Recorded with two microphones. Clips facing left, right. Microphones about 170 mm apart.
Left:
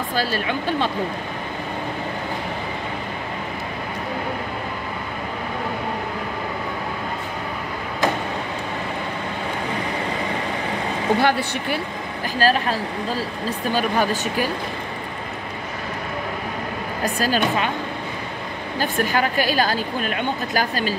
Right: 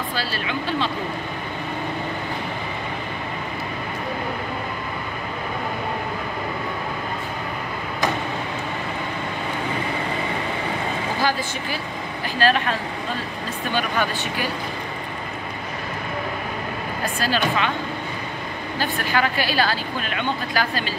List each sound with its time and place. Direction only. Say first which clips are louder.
0.1 s a woman's voice: left 4 dB; 45° left (ahead or behind)
11.1 s a woman's voice: left 4 dB; 65° left (ahead or behind)
12.4 s speech: left 1 dB; 40° left (ahead or behind)
17.0 s speech: left 3 dB; 40° left (ahead or behind)
18.8 s a woman's voice: left 2 dB; 45° left (ahead or behind)